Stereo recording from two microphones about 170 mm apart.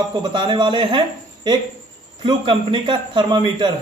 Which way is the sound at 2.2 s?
30° right (ahead or behind).